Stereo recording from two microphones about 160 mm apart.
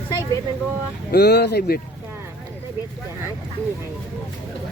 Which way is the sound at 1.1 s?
90° left.